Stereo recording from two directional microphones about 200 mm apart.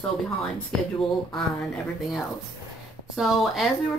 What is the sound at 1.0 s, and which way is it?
A woman's voice, centre (ahead or behind).